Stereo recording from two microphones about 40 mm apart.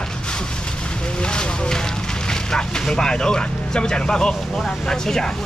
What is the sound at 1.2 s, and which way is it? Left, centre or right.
Speech, left.